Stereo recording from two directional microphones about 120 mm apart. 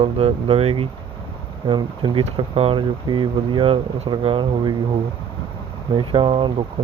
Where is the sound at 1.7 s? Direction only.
40° right (ahead or behind).